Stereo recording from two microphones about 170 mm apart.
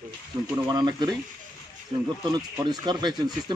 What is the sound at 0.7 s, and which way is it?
Speech, 20° right (ahead or behind).